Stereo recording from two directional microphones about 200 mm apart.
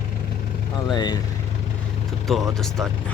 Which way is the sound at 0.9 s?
20° left (ahead or behind).